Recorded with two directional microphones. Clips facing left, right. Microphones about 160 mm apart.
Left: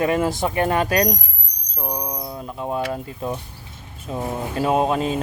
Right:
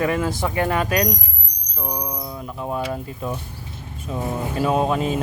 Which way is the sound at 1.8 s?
20° left (ahead or behind).